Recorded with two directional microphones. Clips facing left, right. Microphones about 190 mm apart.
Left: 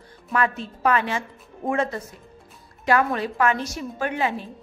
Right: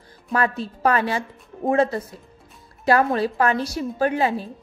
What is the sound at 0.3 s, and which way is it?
A woman's voice, 35° right (ahead or behind).